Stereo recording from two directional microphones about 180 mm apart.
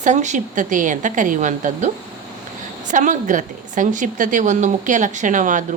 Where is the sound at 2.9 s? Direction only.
45° right (ahead or behind).